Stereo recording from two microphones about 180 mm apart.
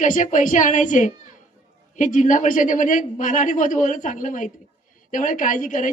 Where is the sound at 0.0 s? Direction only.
45° left (ahead or behind).